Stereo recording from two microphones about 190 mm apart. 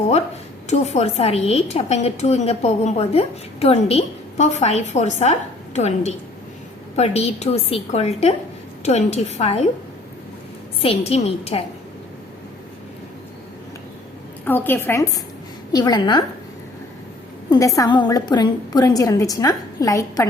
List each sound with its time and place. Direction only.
0.7 s a woman's voice: 35° left (ahead or behind)
10.8 s a woman's voice: 30° left (ahead or behind)
14.4 s a woman's voice: 10° left (ahead or behind)
17.5 s a woman's voice: 15° left (ahead or behind)